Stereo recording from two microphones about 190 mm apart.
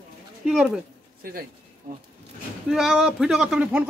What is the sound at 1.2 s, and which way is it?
Speech, 50° right (ahead or behind).